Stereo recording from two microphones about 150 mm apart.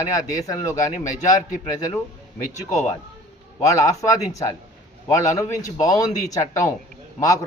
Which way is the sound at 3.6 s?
20° left (ahead or behind).